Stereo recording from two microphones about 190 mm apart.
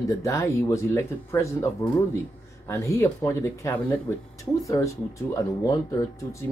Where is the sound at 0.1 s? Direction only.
15° left (ahead or behind).